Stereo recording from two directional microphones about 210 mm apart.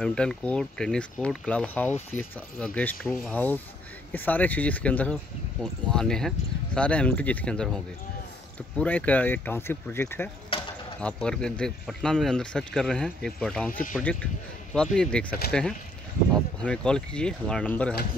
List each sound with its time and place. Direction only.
0.0 s speech: 5° left (ahead or behind)
10.5 s mechanisms: 25° left (ahead or behind)
11.0 s speech: 5° left (ahead or behind)